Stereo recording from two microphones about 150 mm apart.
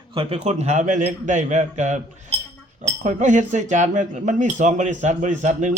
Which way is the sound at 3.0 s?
55° right (ahead or behind).